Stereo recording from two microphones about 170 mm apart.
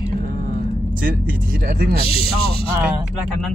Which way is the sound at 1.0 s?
55° right (ahead or behind).